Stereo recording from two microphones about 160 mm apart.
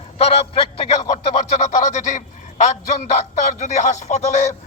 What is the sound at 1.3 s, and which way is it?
A man's voice, 45° left (ahead or behind).